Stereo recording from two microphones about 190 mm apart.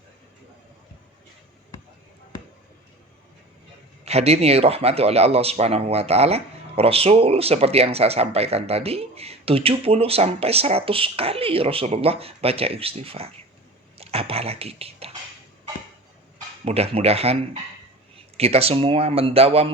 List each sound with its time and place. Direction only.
4.0 s speech: 35° right (ahead or behind)
16.6 s speech: 30° right (ahead or behind)